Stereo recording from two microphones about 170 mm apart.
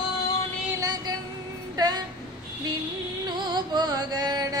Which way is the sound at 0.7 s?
20° right (ahead or behind).